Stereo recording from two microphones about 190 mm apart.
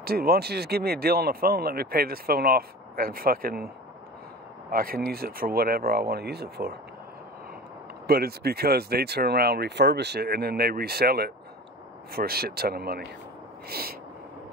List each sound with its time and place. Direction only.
0.0 s speech: 55° right (ahead or behind)
8.1 s speech: 55° right (ahead or behind)